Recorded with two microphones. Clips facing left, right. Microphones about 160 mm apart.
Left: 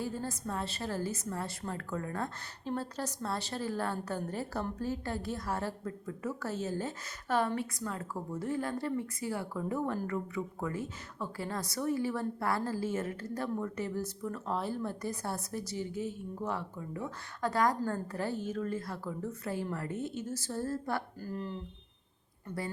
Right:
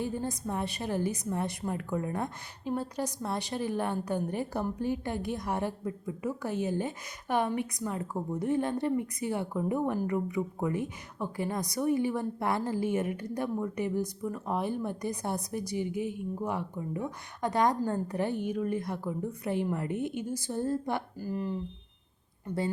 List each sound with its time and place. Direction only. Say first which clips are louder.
0.0 s a woman's voice: right 4 dB; 20° right (ahead or behind)
22.4 s speech: right 6 dB; 25° right (ahead or behind)